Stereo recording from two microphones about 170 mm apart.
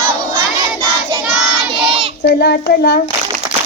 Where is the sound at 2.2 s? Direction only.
90° left.